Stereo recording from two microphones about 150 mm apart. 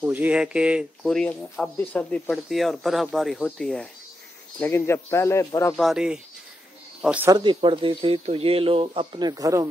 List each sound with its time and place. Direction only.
0.0 s speech: 10° right (ahead or behind)
4.6 s speech: 15° left (ahead or behind)
5.8 s speech: 5° right (ahead or behind)
7.2 s speech: 30° right (ahead or behind)